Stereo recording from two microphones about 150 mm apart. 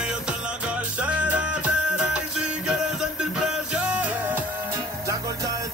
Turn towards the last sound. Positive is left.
turn(degrees=-10)  # may be behind; listen again after turning